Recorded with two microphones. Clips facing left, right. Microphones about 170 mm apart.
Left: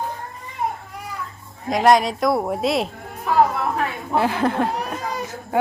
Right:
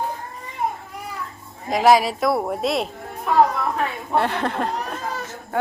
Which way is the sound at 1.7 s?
Centre (ahead or behind).